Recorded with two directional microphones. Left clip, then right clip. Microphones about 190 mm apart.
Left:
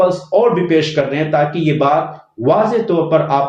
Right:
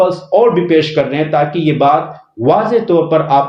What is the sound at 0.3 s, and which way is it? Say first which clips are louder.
Speech: right 3 dB; 40° right (ahead or behind).